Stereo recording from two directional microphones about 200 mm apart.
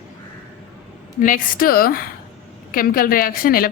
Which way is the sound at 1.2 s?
40° left (ahead or behind).